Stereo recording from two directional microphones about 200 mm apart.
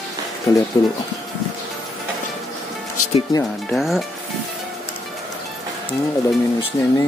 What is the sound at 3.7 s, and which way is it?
Speech, centre (ahead or behind).